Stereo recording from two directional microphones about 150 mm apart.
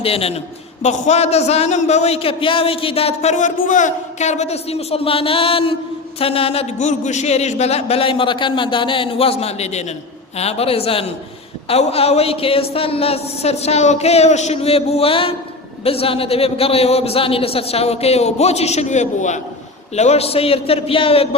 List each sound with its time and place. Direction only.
0.0 s a man's voice: 40° left (ahead or behind)